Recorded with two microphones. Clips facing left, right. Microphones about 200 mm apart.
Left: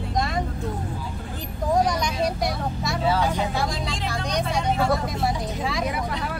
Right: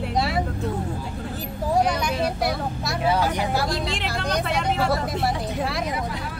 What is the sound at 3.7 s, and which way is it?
Vehicle, 70° right (ahead or behind).